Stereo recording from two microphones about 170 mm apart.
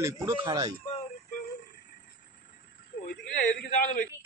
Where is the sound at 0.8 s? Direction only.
40° left (ahead or behind).